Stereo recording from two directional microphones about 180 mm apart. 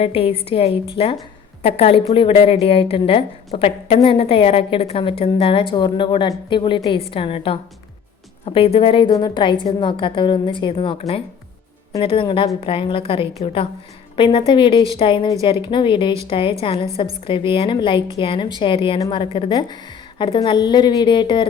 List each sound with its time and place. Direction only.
0.0 s a woman's voice: 30° left (ahead or behind)